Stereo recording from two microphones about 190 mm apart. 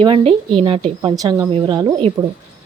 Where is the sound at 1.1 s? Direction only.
20° right (ahead or behind).